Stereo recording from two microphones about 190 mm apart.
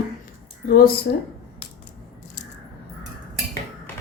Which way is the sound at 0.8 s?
50° left (ahead or behind).